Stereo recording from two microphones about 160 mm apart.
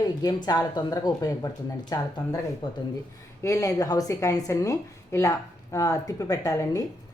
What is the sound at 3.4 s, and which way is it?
A woman's voice, 20° left (ahead or behind).